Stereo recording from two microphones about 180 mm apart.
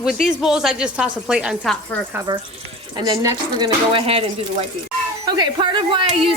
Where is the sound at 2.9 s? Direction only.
25° right (ahead or behind).